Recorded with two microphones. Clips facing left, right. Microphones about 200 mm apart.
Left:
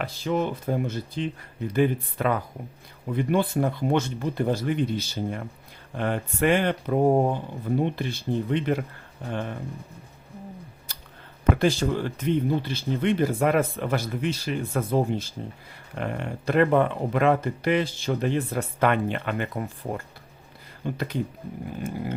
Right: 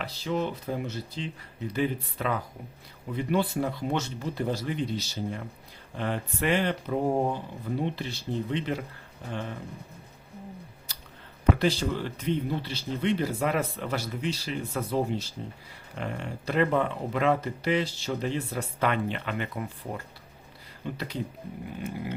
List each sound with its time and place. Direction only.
0.0 s speech: 50° left (ahead or behind)
11.6 s speech: 50° left (ahead or behind)
20.8 s speech: 50° left (ahead or behind)